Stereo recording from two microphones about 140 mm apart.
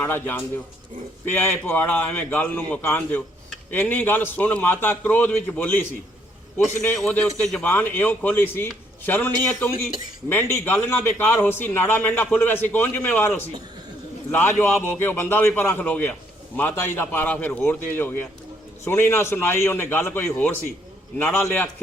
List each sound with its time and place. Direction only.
0.0 s a man's voice: 15° left (ahead or behind)
6.9 s a man's voice: 5° left (ahead or behind)